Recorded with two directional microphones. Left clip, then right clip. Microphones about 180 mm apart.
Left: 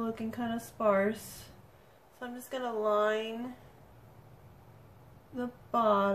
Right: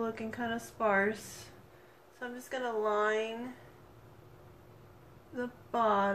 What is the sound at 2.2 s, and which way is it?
A woman's voice, 15° left (ahead or behind).